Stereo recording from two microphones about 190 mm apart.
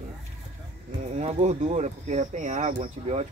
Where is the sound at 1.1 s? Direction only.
35° right (ahead or behind).